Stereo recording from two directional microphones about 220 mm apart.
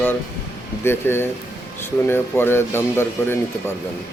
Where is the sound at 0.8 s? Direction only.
10° left (ahead or behind).